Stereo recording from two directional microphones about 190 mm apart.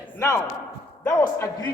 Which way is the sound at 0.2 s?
15° left (ahead or behind).